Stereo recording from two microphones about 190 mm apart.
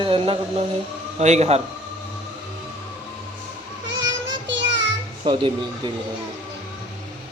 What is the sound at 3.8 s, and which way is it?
Child singing, 75° right (ahead or behind).